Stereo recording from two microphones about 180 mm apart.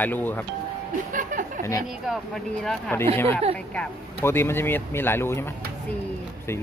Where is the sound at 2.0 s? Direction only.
Centre (ahead or behind).